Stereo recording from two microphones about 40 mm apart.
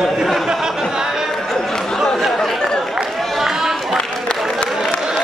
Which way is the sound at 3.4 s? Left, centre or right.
Centre.